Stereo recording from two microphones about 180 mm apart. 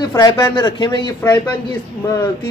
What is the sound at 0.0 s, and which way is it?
Speech, 20° left (ahead or behind).